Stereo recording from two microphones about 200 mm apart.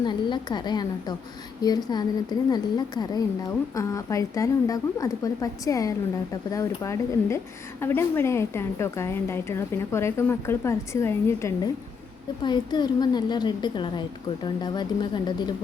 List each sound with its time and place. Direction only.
0.0 s a woman's voice: 20° left (ahead or behind)